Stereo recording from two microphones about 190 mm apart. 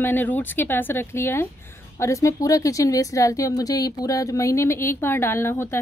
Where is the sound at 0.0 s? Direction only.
10° left (ahead or behind).